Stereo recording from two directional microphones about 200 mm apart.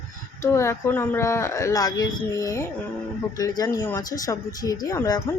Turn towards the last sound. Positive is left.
turn(degrees=20)  # may be behind; listen again after turning